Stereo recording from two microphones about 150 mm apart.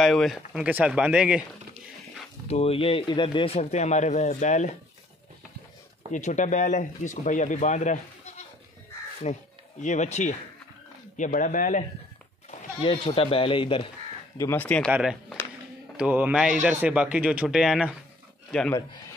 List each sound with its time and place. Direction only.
0.0 s speech: centre (ahead or behind)
2.4 s speech: 45° left (ahead or behind)
6.1 s speech: 55° left (ahead or behind)
12.4 s speech: 40° left (ahead or behind)
14.4 s speech: 15° left (ahead or behind)
14.9 s speech: 5° right (ahead or behind)